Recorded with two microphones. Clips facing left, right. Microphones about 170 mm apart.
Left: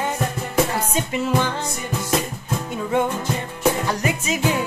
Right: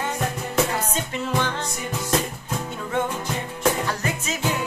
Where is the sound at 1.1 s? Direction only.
10° left (ahead or behind).